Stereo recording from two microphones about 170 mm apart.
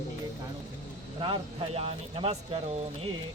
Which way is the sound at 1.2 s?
35° right (ahead or behind).